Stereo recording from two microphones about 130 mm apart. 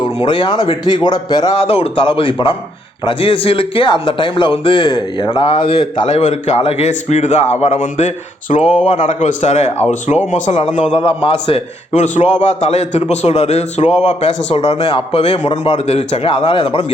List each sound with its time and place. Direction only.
0.2 s speech: 40° left (ahead or behind)
1.5 s a man's voice: 45° left (ahead or behind); by 10.7 s 65° left (ahead or behind)
10.9 s a man's voice: 45° left (ahead or behind)